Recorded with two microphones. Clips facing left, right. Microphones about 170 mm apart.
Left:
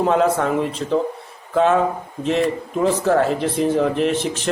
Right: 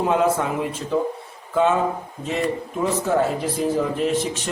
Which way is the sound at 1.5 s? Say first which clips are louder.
Left 3 dB; centre (ahead or behind).